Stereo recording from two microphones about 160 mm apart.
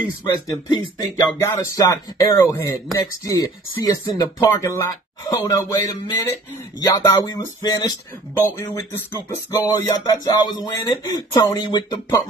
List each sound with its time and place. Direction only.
0.2 s speech: 25° left (ahead or behind)